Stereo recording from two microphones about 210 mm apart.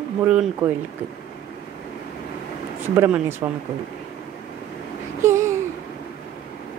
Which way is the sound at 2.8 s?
10° right (ahead or behind).